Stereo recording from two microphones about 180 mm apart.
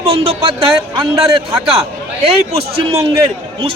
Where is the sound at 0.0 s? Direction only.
30° right (ahead or behind).